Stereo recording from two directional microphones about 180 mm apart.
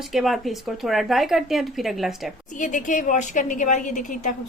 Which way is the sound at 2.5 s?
45° left (ahead or behind).